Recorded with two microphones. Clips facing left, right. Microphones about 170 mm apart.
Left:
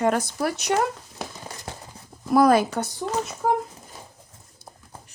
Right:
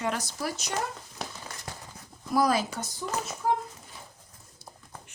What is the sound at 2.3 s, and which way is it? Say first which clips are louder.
Speech: left 8 dB; 55° left (ahead or behind).